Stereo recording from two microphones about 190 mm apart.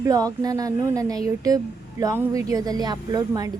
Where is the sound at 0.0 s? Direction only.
20° right (ahead or behind).